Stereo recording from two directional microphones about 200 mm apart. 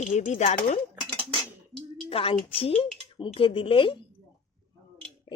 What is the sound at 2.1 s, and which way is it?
A woman's voice, 30° left (ahead or behind).